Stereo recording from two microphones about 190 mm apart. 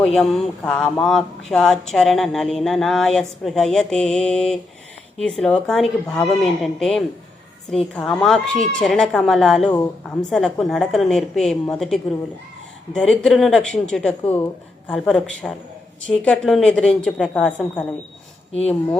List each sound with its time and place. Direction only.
0.0 s speech: centre (ahead or behind)
9.7 s speech: 15° left (ahead or behind)
10.2 s speech: centre (ahead or behind)